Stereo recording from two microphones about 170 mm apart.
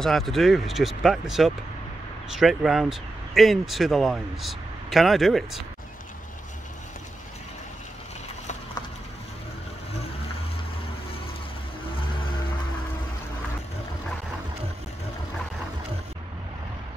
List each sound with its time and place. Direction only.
0.0 s speech: centre (ahead or behind)